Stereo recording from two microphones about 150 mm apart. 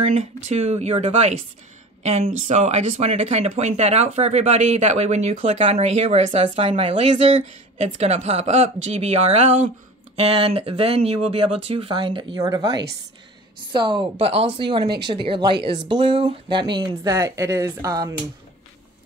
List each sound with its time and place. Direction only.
0.1 s a woman's voice: 45° right (ahead or behind); by 18.1 s 20° right (ahead or behind)